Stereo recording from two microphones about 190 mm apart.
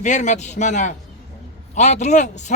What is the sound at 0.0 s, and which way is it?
A man's voice, 40° left (ahead or behind).